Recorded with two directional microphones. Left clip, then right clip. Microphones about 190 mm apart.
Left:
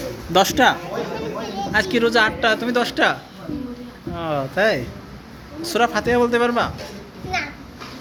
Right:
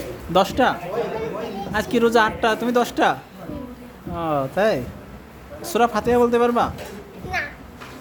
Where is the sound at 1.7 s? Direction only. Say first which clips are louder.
Even; 25° right (ahead or behind).